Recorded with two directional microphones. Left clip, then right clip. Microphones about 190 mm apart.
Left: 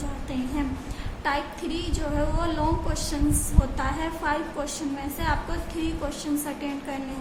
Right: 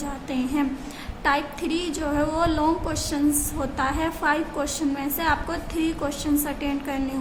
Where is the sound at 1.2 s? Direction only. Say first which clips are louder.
Right 4 dB; 30° right (ahead or behind).